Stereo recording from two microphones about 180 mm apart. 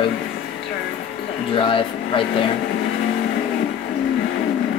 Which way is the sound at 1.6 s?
30° left (ahead or behind).